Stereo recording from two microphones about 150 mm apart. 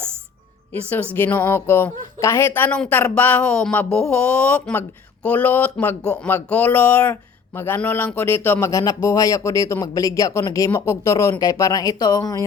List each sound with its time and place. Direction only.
0.7 s speech: 10° left (ahead or behind)